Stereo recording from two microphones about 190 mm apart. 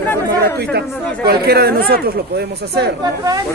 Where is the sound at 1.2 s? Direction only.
55° right (ahead or behind).